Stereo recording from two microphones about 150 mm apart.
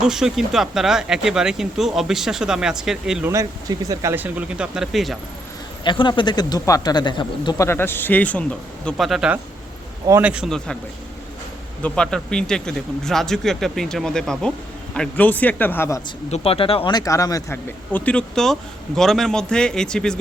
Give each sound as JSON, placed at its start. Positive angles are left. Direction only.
{"t": 0.0, "sound": "speech", "side_deg": -5}
{"t": 3.2, "sound": "speech", "side_deg": -20}
{"t": 4.1, "sound": "speech", "side_deg": -10}
{"t": 5.8, "sound": "speech", "side_deg": 30}
{"t": 7.6, "sound": "speech", "side_deg": 15}
{"t": 11.8, "sound": "speech", "side_deg": 5}
{"t": 16.3, "sound": "speech", "side_deg": 40}
{"t": 17.9, "sound": "speech", "side_deg": 10}